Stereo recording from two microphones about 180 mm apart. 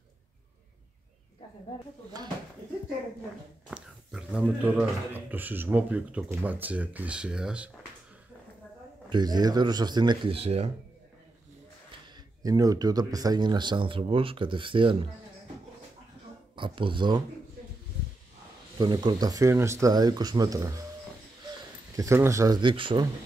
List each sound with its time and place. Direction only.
3.7 s speech: 5° right (ahead or behind)
9.1 s speech: 20° right (ahead or behind)
12.4 s speech: 20° right (ahead or behind)
16.5 s speech: 25° right (ahead or behind)
18.8 s speech: 25° right (ahead or behind)
21.9 s speech: 15° right (ahead or behind)